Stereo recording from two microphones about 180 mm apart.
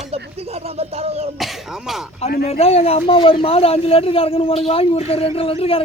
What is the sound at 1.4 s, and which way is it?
Speech, centre (ahead or behind).